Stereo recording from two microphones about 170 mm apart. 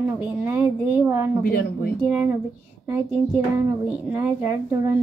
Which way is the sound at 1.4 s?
65° left (ahead or behind).